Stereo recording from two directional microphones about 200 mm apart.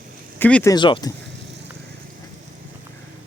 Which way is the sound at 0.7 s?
25° left (ahead or behind).